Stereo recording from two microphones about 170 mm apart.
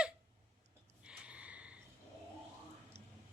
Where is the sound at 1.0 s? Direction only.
5° right (ahead or behind).